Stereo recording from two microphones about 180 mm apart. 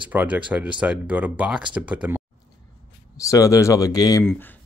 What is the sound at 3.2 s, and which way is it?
Speech, 20° left (ahead or behind).